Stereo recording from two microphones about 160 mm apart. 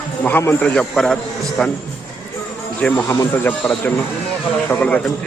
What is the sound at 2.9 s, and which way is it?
A man's voice, 15° left (ahead or behind).